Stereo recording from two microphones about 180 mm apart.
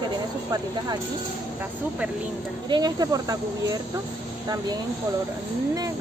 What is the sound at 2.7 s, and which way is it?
Speech, 20° right (ahead or behind).